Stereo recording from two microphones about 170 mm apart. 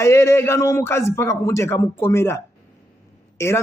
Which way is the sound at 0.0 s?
15° left (ahead or behind).